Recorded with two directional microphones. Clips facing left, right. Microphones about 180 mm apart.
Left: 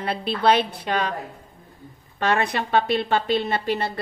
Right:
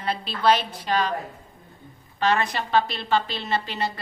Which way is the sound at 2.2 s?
55° left (ahead or behind).